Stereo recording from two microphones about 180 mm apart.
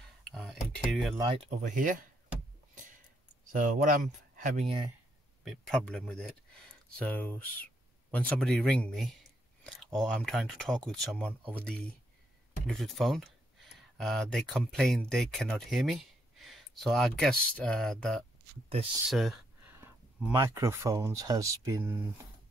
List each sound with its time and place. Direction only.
0.2 s a sound: centre (ahead or behind)
1.1 s speech: 25° right (ahead or behind); by 2.0 s 45° right (ahead or behind)
3.5 s speech: 45° right (ahead or behind)
4.6 s speech: 25° right (ahead or behind)
5.4 s speech: centre (ahead or behind)
9.6 s a sound: centre (ahead or behind)
9.9 s speech: centre (ahead or behind)
19.0 s a sound: centre (ahead or behind)
19.8 s speech: 15° right (ahead or behind)